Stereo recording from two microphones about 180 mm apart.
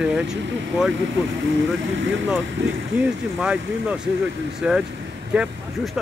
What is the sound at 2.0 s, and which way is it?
Speech, 90° right.